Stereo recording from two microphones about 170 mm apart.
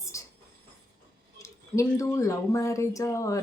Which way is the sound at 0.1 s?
15° left (ahead or behind).